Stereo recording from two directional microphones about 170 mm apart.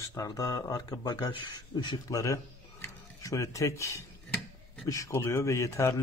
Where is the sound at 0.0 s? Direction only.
20° left (ahead or behind).